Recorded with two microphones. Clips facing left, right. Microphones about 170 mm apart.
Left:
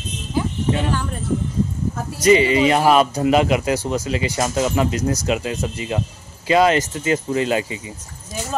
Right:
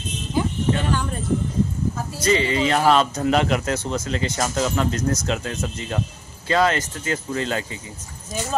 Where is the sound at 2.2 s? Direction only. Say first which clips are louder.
Left 6 dB; 15° left (ahead or behind).